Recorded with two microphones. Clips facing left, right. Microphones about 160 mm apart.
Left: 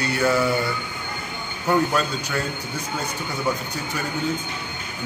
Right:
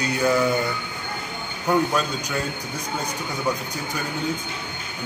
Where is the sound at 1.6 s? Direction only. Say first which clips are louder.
Even; 10° right (ahead or behind).